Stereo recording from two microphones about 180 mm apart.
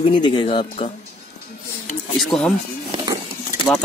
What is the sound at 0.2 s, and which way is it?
Speech, 25° left (ahead or behind).